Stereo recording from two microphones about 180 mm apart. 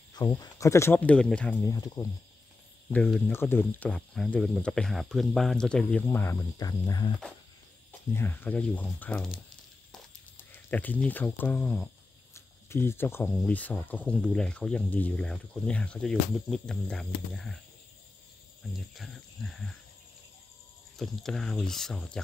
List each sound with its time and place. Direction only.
0.1 s speech: 20° left (ahead or behind)
2.9 s speech: 5° left (ahead or behind); by 7.1 s 20° left (ahead or behind)
8.1 s speech: 15° left (ahead or behind)
10.3 s speech: 10° left (ahead or behind)
18.9 s speech: centre (ahead or behind)
21.0 s speech: centre (ahead or behind)